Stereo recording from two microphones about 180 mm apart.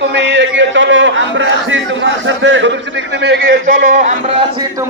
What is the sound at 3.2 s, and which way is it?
Speech, 70° right (ahead or behind).